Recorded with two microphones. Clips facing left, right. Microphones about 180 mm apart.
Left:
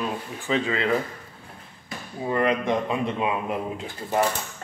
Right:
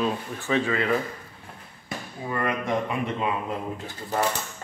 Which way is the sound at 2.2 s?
20° left (ahead or behind).